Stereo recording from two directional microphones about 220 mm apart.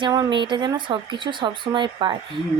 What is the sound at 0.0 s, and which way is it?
Speech, 20° right (ahead or behind).